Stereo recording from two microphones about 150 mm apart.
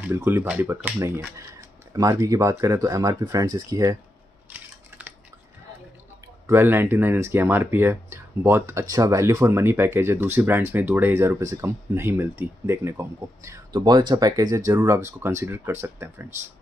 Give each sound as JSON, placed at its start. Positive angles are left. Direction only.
{"t": 0.1, "sound": "speech", "side_deg": -15}
{"t": 4.5, "sound": "a sound", "side_deg": -10}
{"t": 6.4, "sound": "speech", "side_deg": -15}